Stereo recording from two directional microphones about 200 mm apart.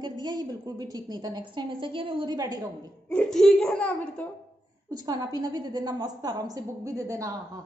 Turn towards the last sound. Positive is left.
turn(degrees=-15)  # may be behind; listen again after turning